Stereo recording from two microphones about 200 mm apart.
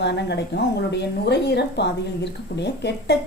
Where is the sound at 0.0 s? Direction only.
60° left (ahead or behind).